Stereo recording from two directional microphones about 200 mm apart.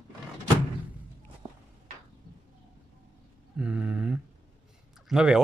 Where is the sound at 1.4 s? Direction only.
25° right (ahead or behind).